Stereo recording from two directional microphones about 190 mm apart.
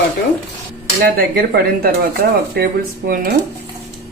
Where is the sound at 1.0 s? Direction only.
50° right (ahead or behind).